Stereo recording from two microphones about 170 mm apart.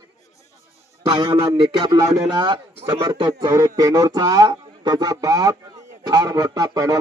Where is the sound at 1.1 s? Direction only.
25° right (ahead or behind).